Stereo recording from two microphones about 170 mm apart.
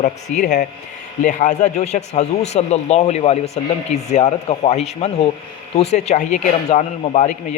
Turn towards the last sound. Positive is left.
turn(degrees=40)  # may be behind; listen again after turning